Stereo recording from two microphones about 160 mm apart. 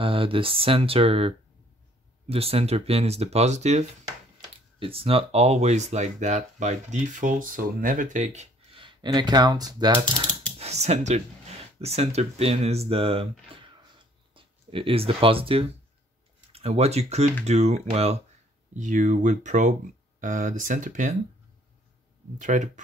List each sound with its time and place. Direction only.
0.0 s speech: 35° right (ahead or behind)
4.7 s speech: 35° right (ahead or behind)
8.7 s speech: 30° right (ahead or behind)
10.6 s speech: 45° right (ahead or behind)
18.8 s speech: 50° right (ahead or behind)
22.4 s speech: 50° right (ahead or behind)